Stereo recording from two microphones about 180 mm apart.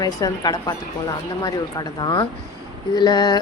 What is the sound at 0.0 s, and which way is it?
A woman's voice, 20° left (ahead or behind).